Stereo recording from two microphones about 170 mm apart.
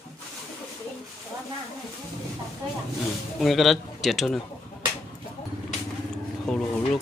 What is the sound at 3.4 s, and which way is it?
Speech, centre (ahead or behind).